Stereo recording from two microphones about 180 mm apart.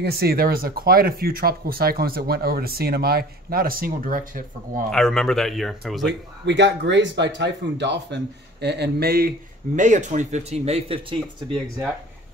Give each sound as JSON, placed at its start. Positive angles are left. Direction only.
{"t": 0.0, "sound": "speech", "side_deg": -60}
{"t": 4.9, "sound": "speech", "side_deg": 0}
{"t": 6.4, "sound": "speech", "side_deg": -75}
{"t": 9.8, "sound": "speech", "side_deg": -40}